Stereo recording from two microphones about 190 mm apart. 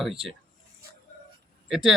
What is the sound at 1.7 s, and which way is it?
Speech, centre (ahead or behind).